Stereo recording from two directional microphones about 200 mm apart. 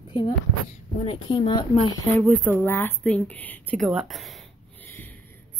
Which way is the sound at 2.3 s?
10° right (ahead or behind).